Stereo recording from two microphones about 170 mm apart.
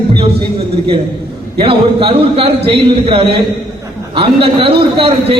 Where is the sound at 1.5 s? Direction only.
30° right (ahead or behind).